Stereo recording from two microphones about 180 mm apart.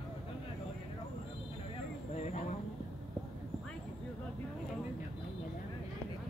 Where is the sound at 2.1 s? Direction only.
40° left (ahead or behind).